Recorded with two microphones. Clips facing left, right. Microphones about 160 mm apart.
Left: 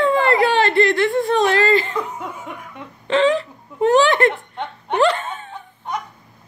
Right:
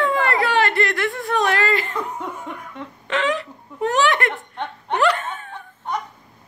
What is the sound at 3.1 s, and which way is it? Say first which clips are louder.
Wail: left 6 dB; 30° left (ahead or behind).